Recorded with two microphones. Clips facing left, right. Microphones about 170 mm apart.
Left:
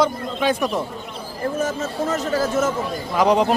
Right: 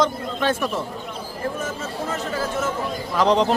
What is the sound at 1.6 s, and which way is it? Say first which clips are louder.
Speech: left 5 dB; 40° left (ahead or behind).